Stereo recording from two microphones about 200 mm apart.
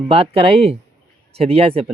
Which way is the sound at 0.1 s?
30° right (ahead or behind).